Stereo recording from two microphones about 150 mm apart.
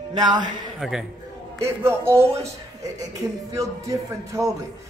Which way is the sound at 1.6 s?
15° right (ahead or behind).